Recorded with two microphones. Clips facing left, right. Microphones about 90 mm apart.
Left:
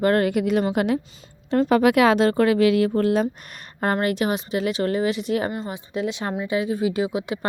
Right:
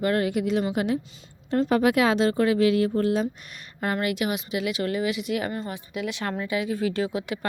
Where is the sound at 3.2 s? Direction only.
45° left (ahead or behind).